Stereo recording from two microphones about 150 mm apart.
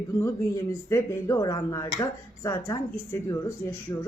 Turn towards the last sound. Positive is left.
turn(degrees=20)  # may be behind; listen again after turning